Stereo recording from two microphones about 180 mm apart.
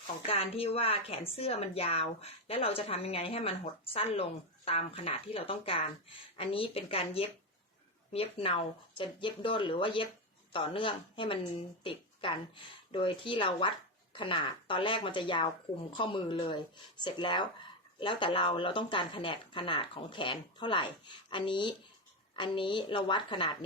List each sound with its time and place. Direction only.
0.3 s a woman's voice: 30° left (ahead or behind)